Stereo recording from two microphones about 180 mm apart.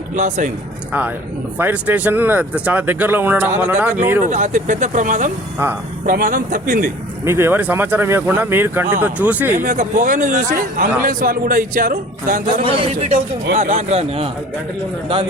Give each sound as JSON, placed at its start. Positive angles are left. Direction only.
{"t": 0.2, "sound": "a man's voice", "side_deg": -45}
{"t": 1.5, "sound": "speech", "side_deg": -10}
{"t": 4.2, "sound": "a man's voice", "side_deg": -40}
{"t": 7.3, "sound": "speech", "side_deg": -15}
{"t": 9.6, "sound": "a man's voice", "side_deg": -45}
{"t": 12.8, "sound": "a man's voice", "side_deg": -35}